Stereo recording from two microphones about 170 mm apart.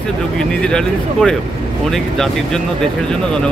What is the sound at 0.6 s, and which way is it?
Speech, 5° left (ahead or behind).